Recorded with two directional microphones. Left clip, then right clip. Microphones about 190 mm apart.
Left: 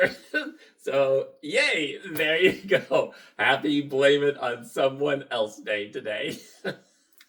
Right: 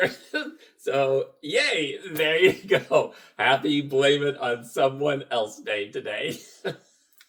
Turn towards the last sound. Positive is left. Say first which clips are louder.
# right 1 dB
turn(degrees=-25)  # may be behind; listen again after turning